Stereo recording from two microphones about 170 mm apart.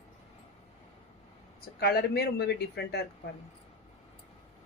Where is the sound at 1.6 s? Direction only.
65° left (ahead or behind).